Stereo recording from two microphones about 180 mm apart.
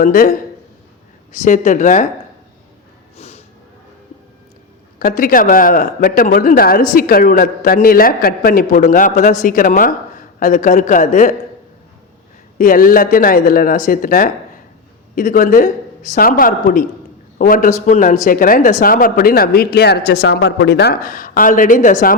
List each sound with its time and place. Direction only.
0.0 s speech: 50° left (ahead or behind)
3.2 s a sound: 35° left (ahead or behind)
4.9 s speech: 50° left (ahead or behind)
12.5 s speech: 50° left (ahead or behind)